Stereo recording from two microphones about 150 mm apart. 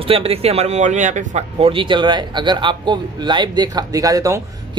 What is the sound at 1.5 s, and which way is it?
Speech, 35° right (ahead or behind).